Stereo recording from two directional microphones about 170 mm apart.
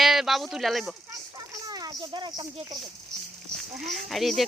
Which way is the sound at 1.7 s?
20° right (ahead or behind).